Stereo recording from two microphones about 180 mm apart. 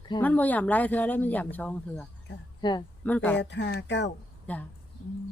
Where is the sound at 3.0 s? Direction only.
10° left (ahead or behind).